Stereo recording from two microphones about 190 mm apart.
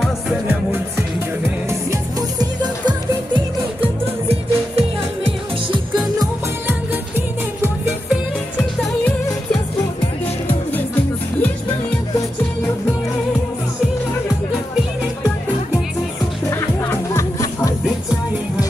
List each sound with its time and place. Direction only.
0.0 s music: 5° right (ahead or behind)
1.7 s music: 20° right (ahead or behind)
7.2 s music: 10° right (ahead or behind)
16.4 s music: 15° left (ahead or behind)